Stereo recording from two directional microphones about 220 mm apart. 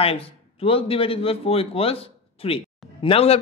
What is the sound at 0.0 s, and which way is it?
A man's voice, 25° left (ahead or behind).